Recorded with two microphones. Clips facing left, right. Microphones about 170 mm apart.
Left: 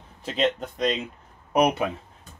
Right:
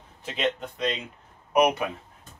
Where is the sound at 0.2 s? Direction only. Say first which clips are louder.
Left 3 dB; 35° left (ahead or behind).